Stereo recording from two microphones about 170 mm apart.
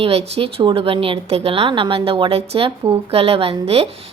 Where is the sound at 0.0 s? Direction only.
35° right (ahead or behind).